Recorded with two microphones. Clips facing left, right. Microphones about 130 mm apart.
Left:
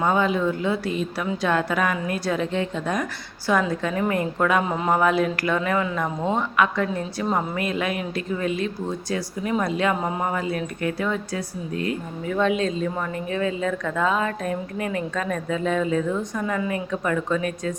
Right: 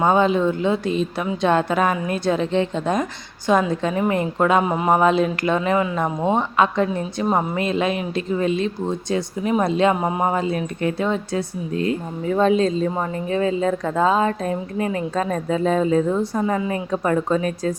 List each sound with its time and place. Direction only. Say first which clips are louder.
0.0 s a woman's voice: right 4 dB; 25° right (ahead or behind)